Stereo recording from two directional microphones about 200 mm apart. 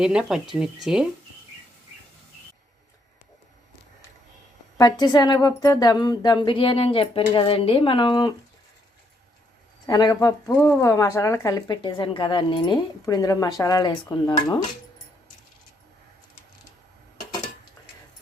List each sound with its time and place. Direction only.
0.0 s speech: centre (ahead or behind)
4.8 s speech: 20° left (ahead or behind)
9.8 s speech: 20° left (ahead or behind)